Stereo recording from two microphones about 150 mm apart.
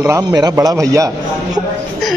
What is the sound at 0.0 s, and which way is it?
A man's voice, 20° right (ahead or behind).